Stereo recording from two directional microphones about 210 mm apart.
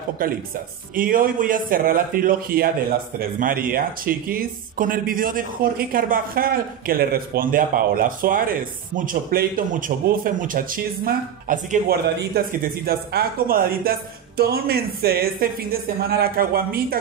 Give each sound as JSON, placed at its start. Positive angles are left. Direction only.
{"t": 0.9, "sound": "speech", "side_deg": -40}